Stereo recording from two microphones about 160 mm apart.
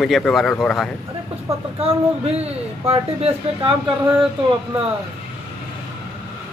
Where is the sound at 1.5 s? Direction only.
40° right (ahead or behind).